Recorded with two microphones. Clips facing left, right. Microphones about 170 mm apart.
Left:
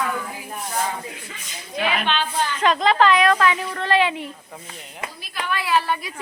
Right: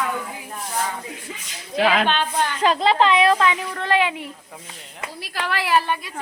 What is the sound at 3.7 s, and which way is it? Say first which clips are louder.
Speech: left 1 dB; 15° right (ahead or behind).